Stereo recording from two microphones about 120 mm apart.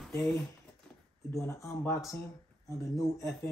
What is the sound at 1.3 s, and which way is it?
Speech, 25° left (ahead or behind).